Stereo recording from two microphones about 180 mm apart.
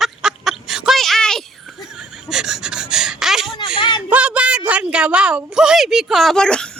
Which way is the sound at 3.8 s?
25° left (ahead or behind).